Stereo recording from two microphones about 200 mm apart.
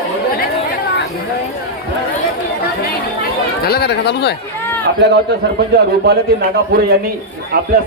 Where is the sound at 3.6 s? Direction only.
50° left (ahead or behind).